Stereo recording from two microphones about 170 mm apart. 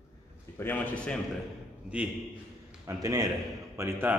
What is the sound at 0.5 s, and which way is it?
Speech, 10° left (ahead or behind).